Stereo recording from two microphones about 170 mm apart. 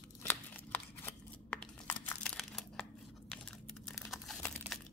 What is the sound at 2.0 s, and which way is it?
Crumpling, 5° left (ahead or behind).